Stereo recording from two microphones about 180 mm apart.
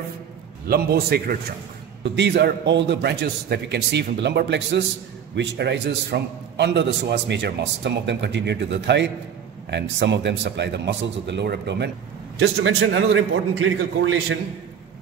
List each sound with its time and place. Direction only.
0.7 s a man's voice: 60° right (ahead or behind)
2.1 s a man's voice: 70° right (ahead or behind)
12.4 s a man's voice: 90° right